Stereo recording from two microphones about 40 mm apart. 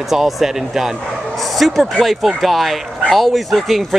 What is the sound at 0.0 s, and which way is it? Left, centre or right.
Speech, centre.